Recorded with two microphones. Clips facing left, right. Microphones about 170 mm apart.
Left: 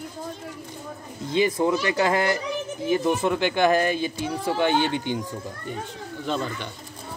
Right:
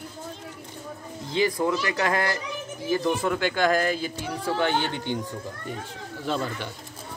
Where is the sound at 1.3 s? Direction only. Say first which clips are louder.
Left 2 dB; 25° left (ahead or behind).